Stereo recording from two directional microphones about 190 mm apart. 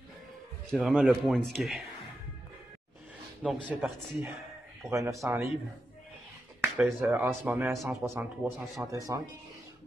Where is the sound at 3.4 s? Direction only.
5° right (ahead or behind).